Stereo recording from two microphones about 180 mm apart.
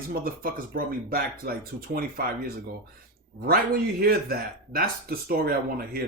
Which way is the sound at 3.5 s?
55° right (ahead or behind).